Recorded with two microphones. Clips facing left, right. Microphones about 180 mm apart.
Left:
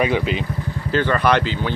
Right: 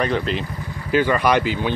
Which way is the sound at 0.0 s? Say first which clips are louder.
Left 2 dB; 5° left (ahead or behind).